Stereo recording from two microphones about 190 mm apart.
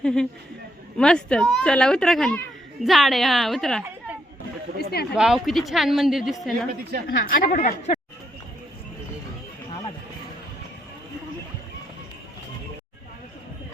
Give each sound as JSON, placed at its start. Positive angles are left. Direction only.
{"t": 0.0, "sound": "a sound", "side_deg": 5}
{"t": 0.9, "sound": "a woman's voice", "side_deg": 5}
{"t": 4.8, "sound": "speech", "side_deg": 55}
{"t": 5.1, "sound": "a woman's voice", "side_deg": 0}
{"t": 6.9, "sound": "a woman's voice", "side_deg": -55}
{"t": 7.3, "sound": "speech", "side_deg": 45}